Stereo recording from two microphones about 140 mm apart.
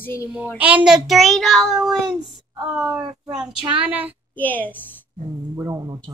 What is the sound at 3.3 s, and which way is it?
Speech, 5° right (ahead or behind).